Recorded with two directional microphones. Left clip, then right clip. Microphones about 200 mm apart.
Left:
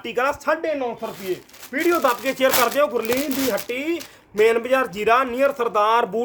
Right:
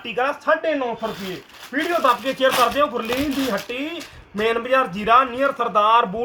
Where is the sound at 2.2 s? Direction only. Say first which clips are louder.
Right 1 dB; 40° left (ahead or behind).